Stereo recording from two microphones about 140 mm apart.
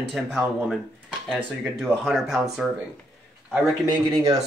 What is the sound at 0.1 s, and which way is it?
Speech, centre (ahead or behind).